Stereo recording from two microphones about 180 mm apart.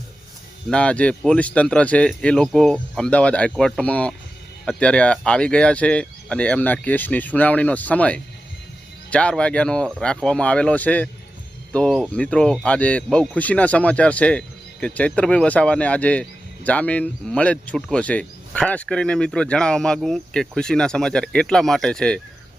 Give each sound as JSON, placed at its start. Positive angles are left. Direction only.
{"t": 0.7, "sound": "speech", "side_deg": 5}